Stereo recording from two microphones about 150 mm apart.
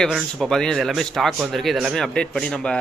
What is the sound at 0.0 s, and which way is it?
Speech, centre (ahead or behind).